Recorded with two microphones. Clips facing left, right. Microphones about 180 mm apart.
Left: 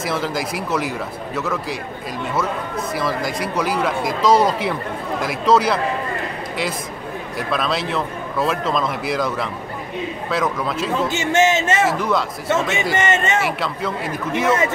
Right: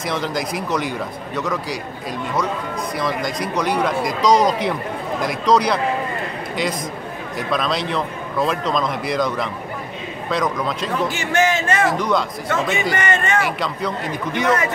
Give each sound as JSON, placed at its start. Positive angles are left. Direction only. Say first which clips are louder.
{"t": 0.0, "sound": "a man's voice", "louder": "even", "side_deg": 5}
{"t": 2.9, "sound": "a man's voice", "louder": "even", "side_deg": 5}
{"t": 7.3, "sound": "a man's voice", "louder": "right 1 dB", "side_deg": 5}
{"t": 11.1, "sound": "a man's voice", "louder": "left 2 dB", "side_deg": 25}
{"t": 12.0, "sound": "a man's voice", "louder": "right 1 dB", "side_deg": 5}
{"t": 12.4, "sound": "a man's voice", "louder": "left 3 dB", "side_deg": 25}
{"t": 13.4, "sound": "a man's voice", "louder": "even", "side_deg": 5}